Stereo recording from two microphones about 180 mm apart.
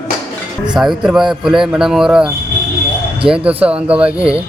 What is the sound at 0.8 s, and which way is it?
Speech, centre (ahead or behind).